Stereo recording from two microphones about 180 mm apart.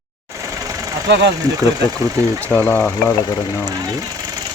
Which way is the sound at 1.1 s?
75° right (ahead or behind).